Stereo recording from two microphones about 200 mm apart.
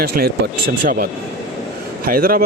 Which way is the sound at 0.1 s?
45° right (ahead or behind).